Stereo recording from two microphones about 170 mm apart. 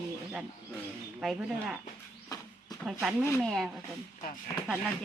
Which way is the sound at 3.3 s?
Centre (ahead or behind).